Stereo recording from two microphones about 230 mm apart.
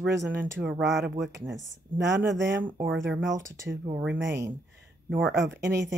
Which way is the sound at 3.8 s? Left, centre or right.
Centre.